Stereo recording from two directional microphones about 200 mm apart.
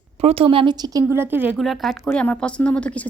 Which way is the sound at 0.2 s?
30° right (ahead or behind).